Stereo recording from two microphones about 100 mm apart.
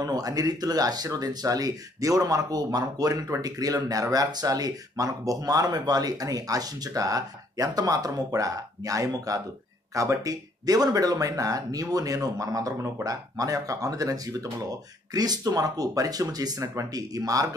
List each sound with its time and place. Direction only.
0.0 s speech: 40° right (ahead or behind)